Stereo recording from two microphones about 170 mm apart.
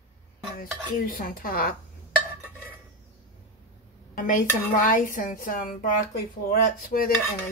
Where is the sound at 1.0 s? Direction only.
55° left (ahead or behind).